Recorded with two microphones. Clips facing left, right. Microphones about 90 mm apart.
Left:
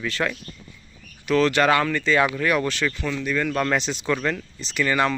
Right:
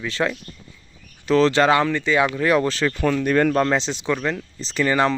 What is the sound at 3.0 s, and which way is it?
Speech, 50° right (ahead or behind).